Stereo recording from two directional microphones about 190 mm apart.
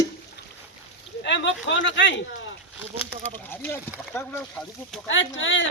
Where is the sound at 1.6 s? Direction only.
70° left (ahead or behind).